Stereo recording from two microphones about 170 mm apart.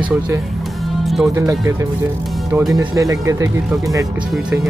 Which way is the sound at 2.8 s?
20° right (ahead or behind).